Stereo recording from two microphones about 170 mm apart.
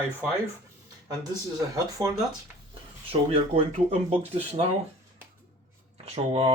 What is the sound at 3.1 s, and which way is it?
Speech, 35° right (ahead or behind).